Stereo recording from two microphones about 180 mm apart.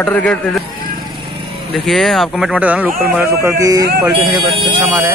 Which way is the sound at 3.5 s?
20° right (ahead or behind).